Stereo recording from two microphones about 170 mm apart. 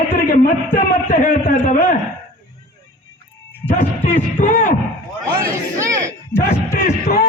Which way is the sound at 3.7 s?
45° left (ahead or behind).